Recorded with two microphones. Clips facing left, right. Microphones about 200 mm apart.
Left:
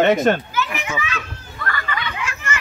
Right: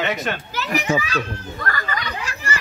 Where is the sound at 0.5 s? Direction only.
35° right (ahead or behind).